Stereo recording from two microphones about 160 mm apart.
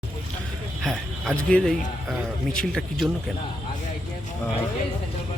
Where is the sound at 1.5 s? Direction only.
5° left (ahead or behind).